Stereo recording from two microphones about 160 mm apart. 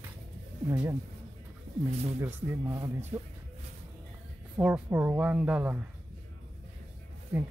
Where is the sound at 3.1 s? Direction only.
30° right (ahead or behind).